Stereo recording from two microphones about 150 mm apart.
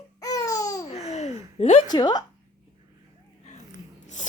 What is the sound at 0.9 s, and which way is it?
Laughter, 45° left (ahead or behind).